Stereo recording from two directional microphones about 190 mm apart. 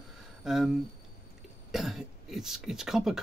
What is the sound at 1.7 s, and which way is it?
Speech, centre (ahead or behind).